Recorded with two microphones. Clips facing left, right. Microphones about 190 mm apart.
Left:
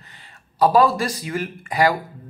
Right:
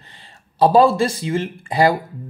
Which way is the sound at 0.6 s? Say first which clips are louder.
Right 3 dB; 30° right (ahead or behind).